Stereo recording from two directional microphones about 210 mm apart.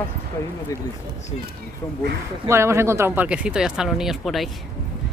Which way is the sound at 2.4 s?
15° right (ahead or behind).